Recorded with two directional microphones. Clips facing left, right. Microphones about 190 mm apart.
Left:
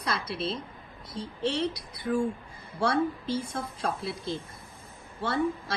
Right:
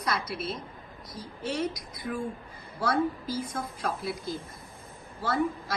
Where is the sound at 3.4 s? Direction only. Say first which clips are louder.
Even; 30° left (ahead or behind).